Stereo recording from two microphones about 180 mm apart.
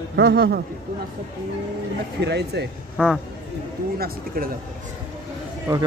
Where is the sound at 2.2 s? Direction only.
70° right (ahead or behind).